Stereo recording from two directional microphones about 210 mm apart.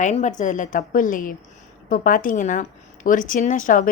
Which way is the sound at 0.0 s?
35° left (ahead or behind).